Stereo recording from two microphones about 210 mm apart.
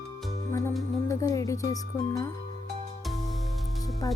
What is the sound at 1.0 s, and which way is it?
Speech, 15° left (ahead or behind).